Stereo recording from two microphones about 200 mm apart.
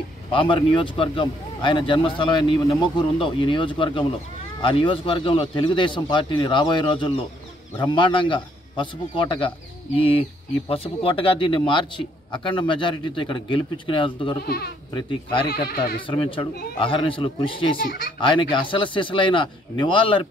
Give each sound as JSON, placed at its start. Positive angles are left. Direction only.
{"t": 0.3, "sound": "a man's voice", "side_deg": 25}
{"t": 14.4, "sound": "speech", "side_deg": 50}
{"t": 15.0, "sound": "a man's voice", "side_deg": 25}
{"t": 15.4, "sound": "speech", "side_deg": 50}
{"t": 16.1, "sound": "a man's voice", "side_deg": 25}